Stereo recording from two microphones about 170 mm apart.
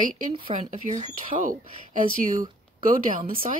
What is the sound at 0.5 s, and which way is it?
Speech, 35° right (ahead or behind).